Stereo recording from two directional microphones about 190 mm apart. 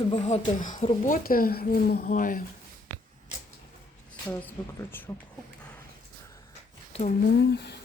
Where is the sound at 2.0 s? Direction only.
45° left (ahead or behind).